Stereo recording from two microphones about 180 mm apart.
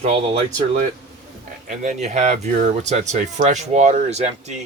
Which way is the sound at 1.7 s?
40° right (ahead or behind).